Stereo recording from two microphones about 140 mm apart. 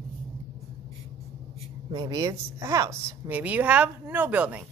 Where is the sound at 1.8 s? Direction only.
30° right (ahead or behind); by 4.6 s 10° right (ahead or behind).